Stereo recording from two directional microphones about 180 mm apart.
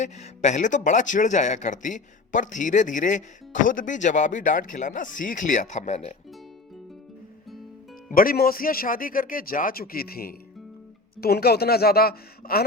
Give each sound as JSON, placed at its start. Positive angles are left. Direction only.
{"t": 0.0, "sound": "speech", "side_deg": 40}
{"t": 8.1, "sound": "speech", "side_deg": 50}